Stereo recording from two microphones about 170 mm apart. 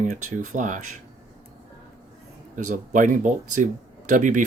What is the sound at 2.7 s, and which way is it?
Speech, 50° right (ahead or behind).